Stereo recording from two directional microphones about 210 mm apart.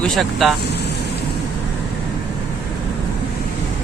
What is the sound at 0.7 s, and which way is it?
Vehicle, 50° left (ahead or behind).